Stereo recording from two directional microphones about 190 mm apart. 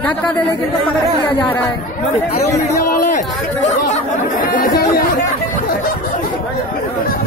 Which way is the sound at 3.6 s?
40° left (ahead or behind).